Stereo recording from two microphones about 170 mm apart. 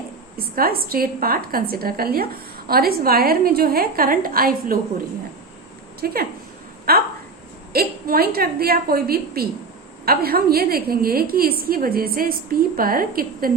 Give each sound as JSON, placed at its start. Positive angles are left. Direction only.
{"t": 0.3, "sound": "a woman's voice", "side_deg": -60}
{"t": 6.0, "sound": "a woman's voice", "side_deg": -60}